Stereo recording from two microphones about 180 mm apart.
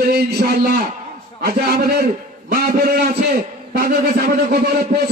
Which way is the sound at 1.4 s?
55° right (ahead or behind).